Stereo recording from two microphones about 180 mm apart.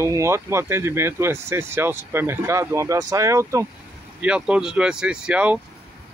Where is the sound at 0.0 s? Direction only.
15° right (ahead or behind).